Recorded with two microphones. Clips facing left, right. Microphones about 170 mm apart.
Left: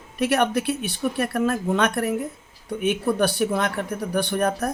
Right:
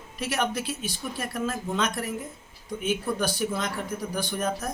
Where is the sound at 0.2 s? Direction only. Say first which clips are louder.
Left 7 dB; 60° left (ahead or behind).